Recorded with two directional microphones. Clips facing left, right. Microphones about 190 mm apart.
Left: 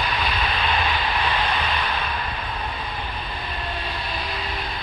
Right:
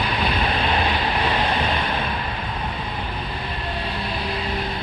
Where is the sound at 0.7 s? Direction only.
35° right (ahead or behind).